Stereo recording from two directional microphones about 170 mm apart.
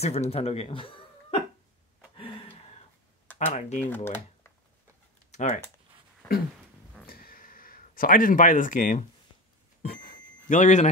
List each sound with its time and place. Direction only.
0.0 s speech: 35° left (ahead or behind)
2.1 s gasp: 30° left (ahead or behind)
3.3 s speech: 45° left (ahead or behind)
3.8 s speech: 10° left (ahead or behind)
5.3 s speech: 45° left (ahead or behind)
7.1 s a sound: 60° left (ahead or behind); by 10.9 s 45° left (ahead or behind)